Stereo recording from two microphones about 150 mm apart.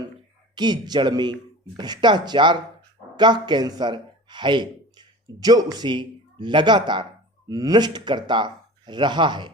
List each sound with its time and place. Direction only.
0.5 s a man's voice: 30° right (ahead or behind)